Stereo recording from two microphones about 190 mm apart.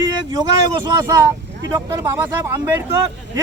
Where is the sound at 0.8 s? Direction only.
15° right (ahead or behind).